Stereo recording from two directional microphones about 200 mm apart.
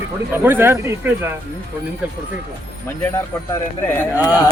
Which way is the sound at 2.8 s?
10° left (ahead or behind).